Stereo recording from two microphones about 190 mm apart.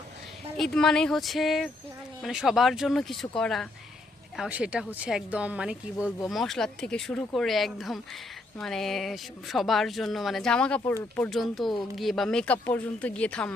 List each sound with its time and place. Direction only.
0.5 s speech: 5° left (ahead or behind)